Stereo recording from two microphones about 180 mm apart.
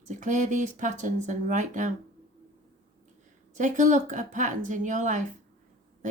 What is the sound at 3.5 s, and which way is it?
A woman's voice, 45° right (ahead or behind).